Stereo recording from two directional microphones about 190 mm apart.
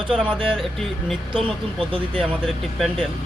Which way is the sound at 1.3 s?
30° right (ahead or behind).